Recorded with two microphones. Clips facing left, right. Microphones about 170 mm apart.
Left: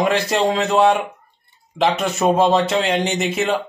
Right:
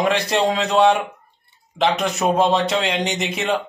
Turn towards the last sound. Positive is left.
turn(degrees=0)  # may be behind; listen again after turning